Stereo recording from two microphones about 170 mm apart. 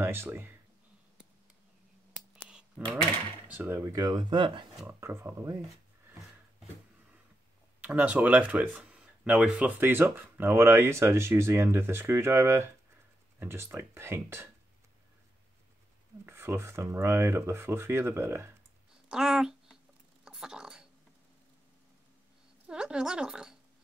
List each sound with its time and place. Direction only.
0.0 s speech: 15° right (ahead or behind)
2.8 s speech: 5° left (ahead or behind)
3.5 s speech: 15° right (ahead or behind); by 4.8 s 30° right (ahead or behind)
4.8 s speech: 15° right (ahead or behind)
7.8 s speech: 10° right (ahead or behind)
16.3 s speech: 15° right (ahead or behind)
19.0 s a sound: 5° right (ahead or behind)
22.7 s a sound: 5° right (ahead or behind)